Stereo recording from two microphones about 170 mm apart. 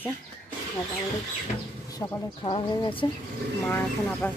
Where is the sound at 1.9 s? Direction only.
20° left (ahead or behind).